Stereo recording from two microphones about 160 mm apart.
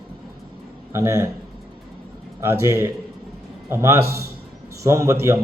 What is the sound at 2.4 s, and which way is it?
A man's voice, 15° right (ahead or behind).